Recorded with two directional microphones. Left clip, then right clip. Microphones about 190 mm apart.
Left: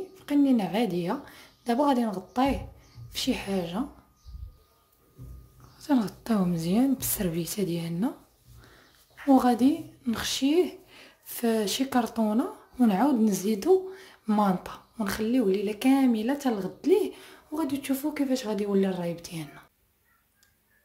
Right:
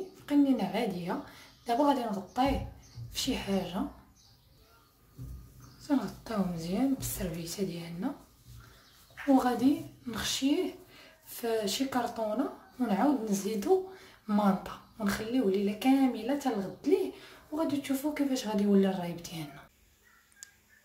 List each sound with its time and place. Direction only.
0.2 s a woman's voice: 40° left (ahead or behind)
5.8 s speech: 55° left (ahead or behind)
10.1 s a woman's voice: 45° left (ahead or behind)